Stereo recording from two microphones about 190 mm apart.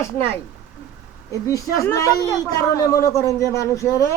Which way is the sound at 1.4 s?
15° left (ahead or behind).